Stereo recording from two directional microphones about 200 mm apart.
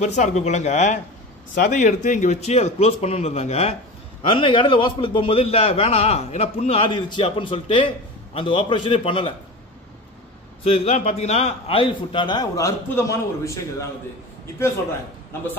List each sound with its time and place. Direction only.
0.0 s a man's voice: 35° left (ahead or behind)
10.6 s a man's voice: 30° left (ahead or behind); by 13.8 s 15° left (ahead or behind)